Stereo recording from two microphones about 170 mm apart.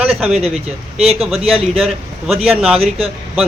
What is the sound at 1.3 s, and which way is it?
Speech, 35° right (ahead or behind).